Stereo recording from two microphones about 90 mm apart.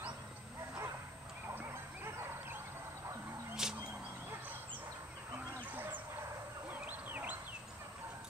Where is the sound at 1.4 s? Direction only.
30° right (ahead or behind).